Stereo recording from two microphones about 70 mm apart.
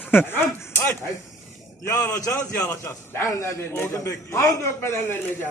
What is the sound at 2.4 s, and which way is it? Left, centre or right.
A man's voice, left.